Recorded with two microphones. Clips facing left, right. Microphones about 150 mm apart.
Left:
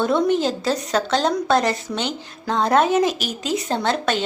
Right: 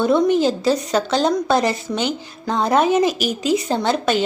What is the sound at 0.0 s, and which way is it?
A woman's voice, centre (ahead or behind).